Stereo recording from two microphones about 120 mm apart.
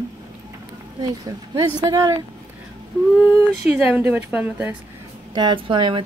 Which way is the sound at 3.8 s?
10° right (ahead or behind).